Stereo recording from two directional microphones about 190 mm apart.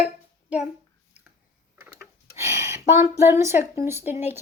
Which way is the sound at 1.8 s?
15° right (ahead or behind).